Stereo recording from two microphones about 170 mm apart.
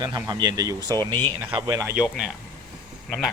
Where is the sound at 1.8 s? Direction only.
5° right (ahead or behind).